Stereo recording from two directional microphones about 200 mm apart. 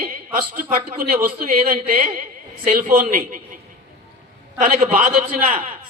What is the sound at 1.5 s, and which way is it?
A man's voice, 40° right (ahead or behind).